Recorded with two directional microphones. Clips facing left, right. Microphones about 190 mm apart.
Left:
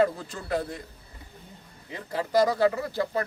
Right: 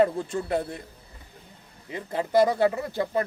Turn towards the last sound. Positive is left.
turn(degrees=-20)  # may be behind; listen again after turning